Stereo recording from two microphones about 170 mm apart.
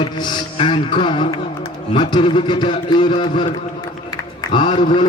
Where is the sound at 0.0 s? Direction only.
30° left (ahead or behind).